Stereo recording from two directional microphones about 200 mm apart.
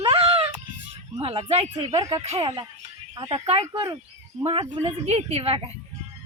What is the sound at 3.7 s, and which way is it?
A woman's voice, 20° right (ahead or behind).